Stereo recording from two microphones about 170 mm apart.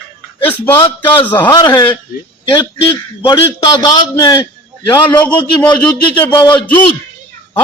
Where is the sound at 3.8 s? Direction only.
15° left (ahead or behind).